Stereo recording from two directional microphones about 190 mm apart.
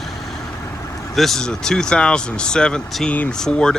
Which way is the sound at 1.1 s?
Centre (ahead or behind).